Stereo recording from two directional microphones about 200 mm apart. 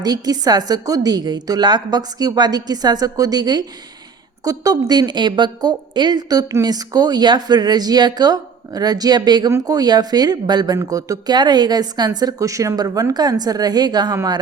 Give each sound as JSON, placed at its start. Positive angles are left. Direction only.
{"t": 0.0, "sound": "a woman's voice", "side_deg": -20}